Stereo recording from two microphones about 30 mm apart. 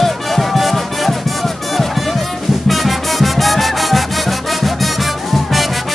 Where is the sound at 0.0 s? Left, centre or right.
Centre.